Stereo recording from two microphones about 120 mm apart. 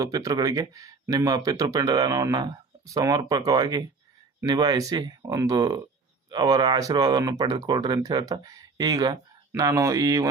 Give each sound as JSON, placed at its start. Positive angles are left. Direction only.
{"t": 0.0, "sound": "speech", "side_deg": -30}